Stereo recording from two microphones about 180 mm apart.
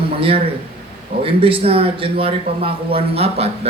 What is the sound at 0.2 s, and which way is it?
Speech, 30° right (ahead or behind).